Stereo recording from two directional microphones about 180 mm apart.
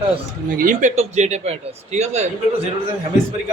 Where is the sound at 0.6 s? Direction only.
45° right (ahead or behind).